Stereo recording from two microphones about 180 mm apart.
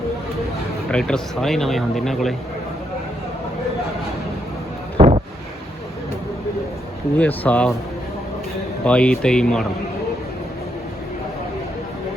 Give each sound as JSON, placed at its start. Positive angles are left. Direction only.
{"t": 0.9, "sound": "speech", "side_deg": 5}
{"t": 4.9, "sound": "wind noise", "side_deg": -35}
{"t": 7.2, "sound": "speech", "side_deg": 10}
{"t": 8.8, "sound": "speech", "side_deg": 5}